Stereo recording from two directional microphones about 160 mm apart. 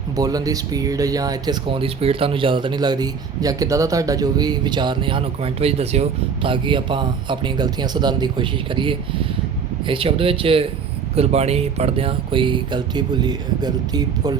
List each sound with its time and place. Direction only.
0.2 s speech: 25° right (ahead or behind)